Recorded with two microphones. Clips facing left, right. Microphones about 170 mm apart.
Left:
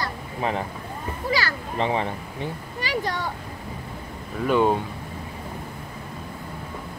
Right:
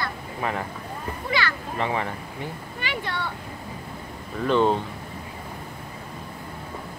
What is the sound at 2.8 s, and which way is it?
Speech, 40° left (ahead or behind).